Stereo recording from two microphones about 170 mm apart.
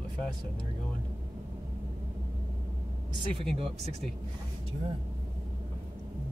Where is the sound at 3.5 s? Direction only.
40° right (ahead or behind).